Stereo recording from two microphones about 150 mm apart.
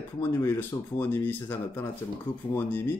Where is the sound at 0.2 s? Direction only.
20° left (ahead or behind).